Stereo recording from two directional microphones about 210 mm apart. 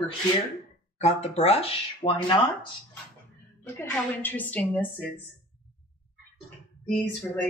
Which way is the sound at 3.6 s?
10° left (ahead or behind).